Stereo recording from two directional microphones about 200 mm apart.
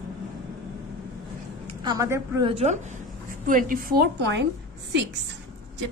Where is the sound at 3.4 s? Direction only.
45° right (ahead or behind).